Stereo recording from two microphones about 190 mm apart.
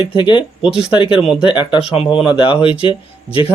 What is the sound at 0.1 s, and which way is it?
Speech, 25° left (ahead or behind).